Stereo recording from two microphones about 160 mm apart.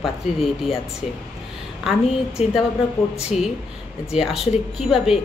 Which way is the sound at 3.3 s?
45° left (ahead or behind).